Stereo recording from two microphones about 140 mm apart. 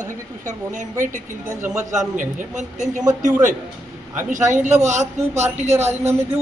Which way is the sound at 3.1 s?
20° right (ahead or behind).